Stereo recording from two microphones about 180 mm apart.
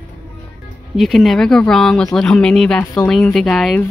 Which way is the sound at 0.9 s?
Centre (ahead or behind).